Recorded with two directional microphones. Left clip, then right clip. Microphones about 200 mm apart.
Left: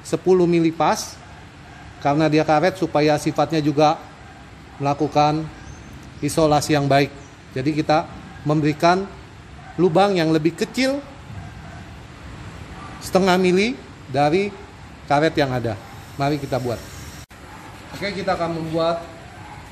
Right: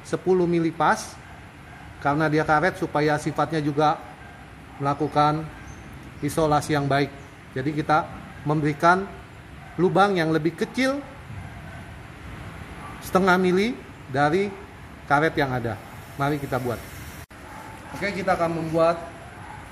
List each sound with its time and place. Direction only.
0.1 s a man's voice: 30° left (ahead or behind)
2.0 s a man's voice: 30° left (ahead or behind)
13.1 s a man's voice: 25° left (ahead or behind)
18.0 s a man's voice: 5° right (ahead or behind)